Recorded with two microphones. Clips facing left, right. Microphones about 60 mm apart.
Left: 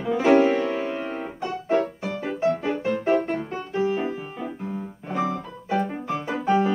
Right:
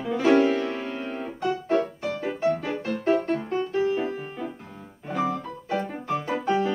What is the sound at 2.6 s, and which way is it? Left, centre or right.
Music, centre.